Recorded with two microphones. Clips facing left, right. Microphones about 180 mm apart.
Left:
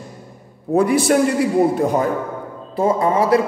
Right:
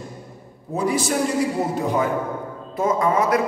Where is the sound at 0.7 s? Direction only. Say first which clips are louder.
Left 7 dB; 60° left (ahead or behind).